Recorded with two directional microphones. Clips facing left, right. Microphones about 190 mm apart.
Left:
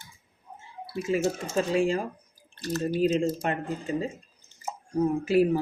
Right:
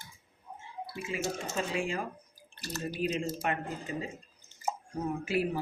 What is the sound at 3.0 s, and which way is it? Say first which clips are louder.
Speech: left 5 dB; 30° left (ahead or behind).